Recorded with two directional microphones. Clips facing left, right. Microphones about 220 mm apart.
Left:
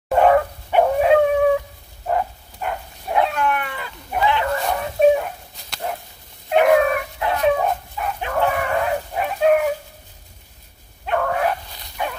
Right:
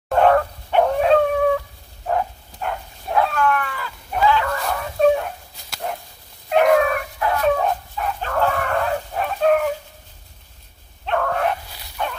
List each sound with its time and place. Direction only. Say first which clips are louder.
0.1 s dog: left 1 dB; 10° left (ahead or behind)
2.0 s bow-wow: even; 5° left (ahead or behind)
3.2 s dog: right 1 dB; 20° left (ahead or behind)
4.6 s chicken: left 2 dB; 20° left (ahead or behind)
5.1 s dog: left 1 dB; 5° left (ahead or behind)
7.2 s dog: right 1 dB; 20° left (ahead or behind)
7.5 s dog: even; 5° left (ahead or behind)
11.1 s dog: left 1 dB; 5° left (ahead or behind)